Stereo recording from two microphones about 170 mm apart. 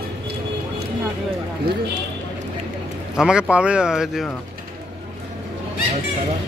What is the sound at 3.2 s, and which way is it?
Speech, 5° right (ahead or behind).